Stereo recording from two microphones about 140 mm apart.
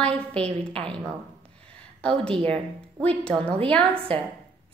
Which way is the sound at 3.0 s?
10° left (ahead or behind).